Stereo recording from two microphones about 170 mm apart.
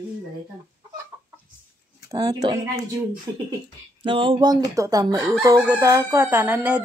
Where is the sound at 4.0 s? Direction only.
30° right (ahead or behind).